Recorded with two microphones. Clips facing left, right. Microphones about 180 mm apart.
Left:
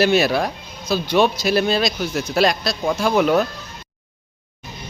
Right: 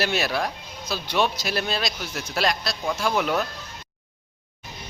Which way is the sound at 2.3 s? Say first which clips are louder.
Left 6 dB; 60° left (ahead or behind).